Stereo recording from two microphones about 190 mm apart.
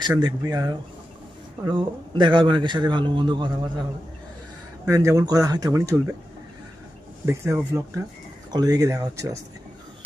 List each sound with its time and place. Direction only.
0.2 s a man's voice: 20° right (ahead or behind)
4.9 s speech: 15° right (ahead or behind)
7.3 s speech: 15° right (ahead or behind)